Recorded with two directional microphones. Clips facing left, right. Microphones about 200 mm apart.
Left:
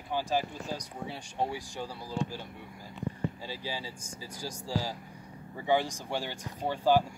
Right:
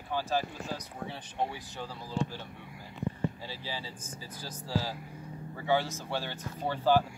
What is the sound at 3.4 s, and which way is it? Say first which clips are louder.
Speech: left 2 dB; 15° left (ahead or behind).